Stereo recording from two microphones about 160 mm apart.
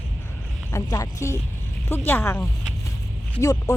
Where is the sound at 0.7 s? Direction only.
20° left (ahead or behind).